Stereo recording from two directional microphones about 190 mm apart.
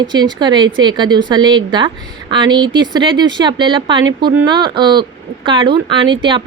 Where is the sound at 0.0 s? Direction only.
25° right (ahead or behind).